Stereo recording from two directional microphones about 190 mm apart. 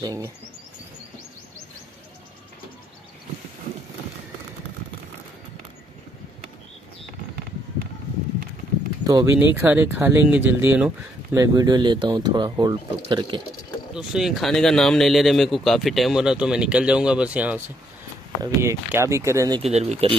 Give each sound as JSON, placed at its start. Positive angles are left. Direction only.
{"t": 0.0, "sound": "speech", "side_deg": -15}
{"t": 9.0, "sound": "speech", "side_deg": -15}
{"t": 13.9, "sound": "speech", "side_deg": 0}
{"t": 19.6, "sound": "speech", "side_deg": -35}